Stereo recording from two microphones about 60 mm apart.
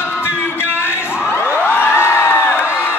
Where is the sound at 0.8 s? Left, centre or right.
Left.